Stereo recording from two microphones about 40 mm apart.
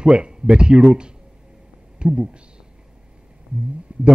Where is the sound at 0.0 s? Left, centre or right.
Right.